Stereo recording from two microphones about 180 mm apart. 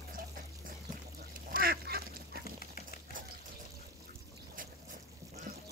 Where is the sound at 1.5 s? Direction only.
55° right (ahead or behind).